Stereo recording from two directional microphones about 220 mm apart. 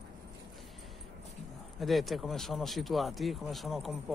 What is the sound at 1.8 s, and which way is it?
Speech, centre (ahead or behind).